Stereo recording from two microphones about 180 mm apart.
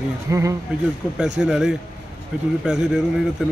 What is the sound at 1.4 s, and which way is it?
Speech, 5° right (ahead or behind).